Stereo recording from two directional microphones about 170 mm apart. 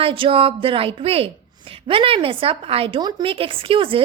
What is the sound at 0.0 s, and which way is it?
A woman's voice, 30° right (ahead or behind).